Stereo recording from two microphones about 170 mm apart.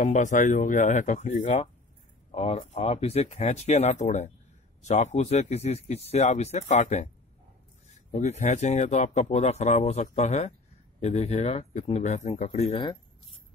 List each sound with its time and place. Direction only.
0.0 s speech: 45° left (ahead or behind)
8.1 s speech: 45° left (ahead or behind)